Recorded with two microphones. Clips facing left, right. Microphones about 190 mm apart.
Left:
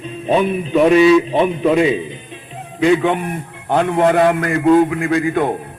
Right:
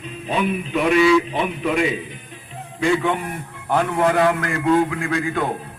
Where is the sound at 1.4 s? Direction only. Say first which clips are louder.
Left 7 dB; 30° left (ahead or behind).